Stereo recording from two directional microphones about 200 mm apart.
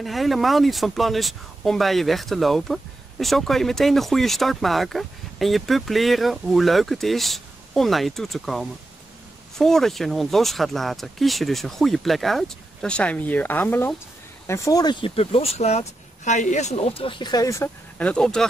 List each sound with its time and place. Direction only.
0.0 s speech: centre (ahead or behind)